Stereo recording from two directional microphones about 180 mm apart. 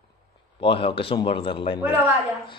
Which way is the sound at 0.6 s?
30° left (ahead or behind).